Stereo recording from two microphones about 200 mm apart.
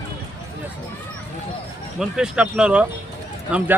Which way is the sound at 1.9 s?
5° right (ahead or behind).